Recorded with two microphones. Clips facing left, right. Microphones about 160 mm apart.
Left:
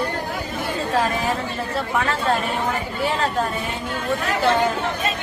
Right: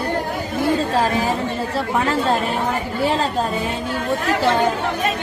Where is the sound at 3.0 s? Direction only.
30° right (ahead or behind).